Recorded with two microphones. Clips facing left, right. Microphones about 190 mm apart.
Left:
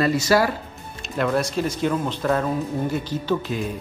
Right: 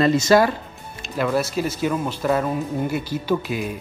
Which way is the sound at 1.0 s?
Centre (ahead or behind).